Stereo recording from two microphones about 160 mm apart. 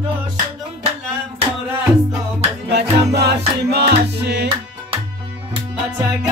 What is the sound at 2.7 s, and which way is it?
Music, 90° right.